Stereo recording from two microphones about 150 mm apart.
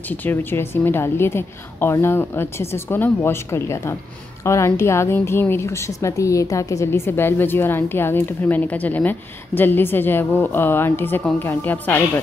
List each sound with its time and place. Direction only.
0.1 s a woman's voice: 10° left (ahead or behind)